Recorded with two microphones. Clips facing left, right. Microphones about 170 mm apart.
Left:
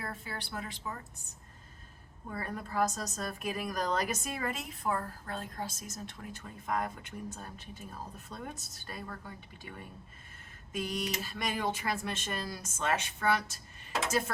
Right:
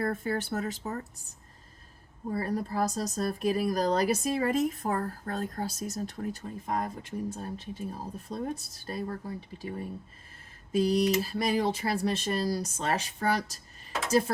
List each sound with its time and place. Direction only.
0.0 s speech: 50° right (ahead or behind)
2.2 s speech: 35° right (ahead or behind)